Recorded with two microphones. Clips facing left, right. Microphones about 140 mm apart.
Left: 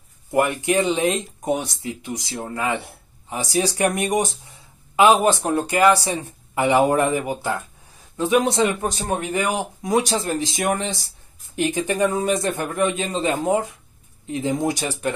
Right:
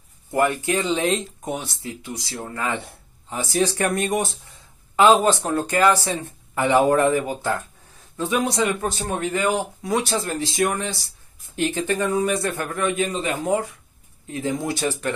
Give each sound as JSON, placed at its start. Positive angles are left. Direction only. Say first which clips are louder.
{"t": 0.3, "sound": "speech", "louder": "left 1 dB", "side_deg": 15}